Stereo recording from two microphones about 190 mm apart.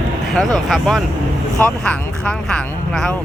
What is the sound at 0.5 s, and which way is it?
Speech, centre (ahead or behind).